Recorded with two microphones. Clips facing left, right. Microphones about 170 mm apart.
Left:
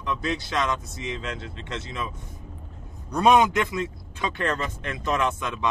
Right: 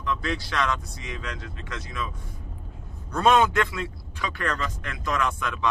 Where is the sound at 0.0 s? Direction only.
20° left (ahead or behind).